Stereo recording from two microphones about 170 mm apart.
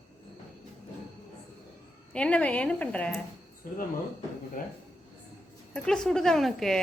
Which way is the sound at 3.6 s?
55° left (ahead or behind).